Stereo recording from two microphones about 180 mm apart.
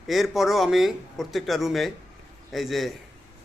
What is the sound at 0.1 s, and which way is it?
Speech, centre (ahead or behind).